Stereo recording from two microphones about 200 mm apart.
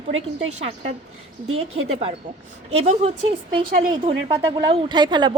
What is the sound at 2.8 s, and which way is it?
Speech, 30° right (ahead or behind).